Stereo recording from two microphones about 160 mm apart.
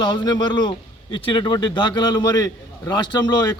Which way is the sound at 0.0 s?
25° left (ahead or behind).